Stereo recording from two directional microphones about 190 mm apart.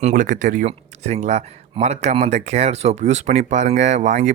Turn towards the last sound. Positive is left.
turn(degrees=-40)  # may be behind; listen again after turning